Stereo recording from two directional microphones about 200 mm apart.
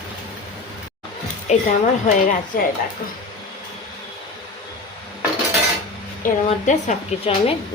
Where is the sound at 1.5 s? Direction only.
35° left (ahead or behind).